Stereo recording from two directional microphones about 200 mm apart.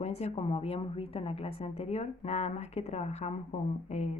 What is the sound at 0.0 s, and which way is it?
Speech, 30° left (ahead or behind).